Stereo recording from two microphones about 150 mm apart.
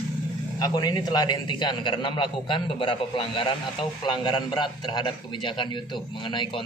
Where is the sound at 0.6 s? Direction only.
25° left (ahead or behind).